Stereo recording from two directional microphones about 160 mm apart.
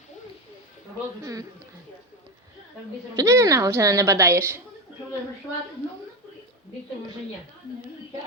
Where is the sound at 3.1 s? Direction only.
15° right (ahead or behind).